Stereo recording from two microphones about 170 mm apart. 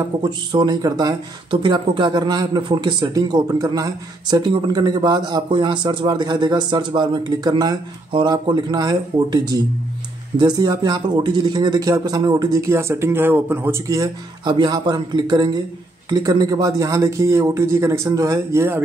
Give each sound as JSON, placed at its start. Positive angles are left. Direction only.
{"t": 0.0, "sound": "speech", "side_deg": -25}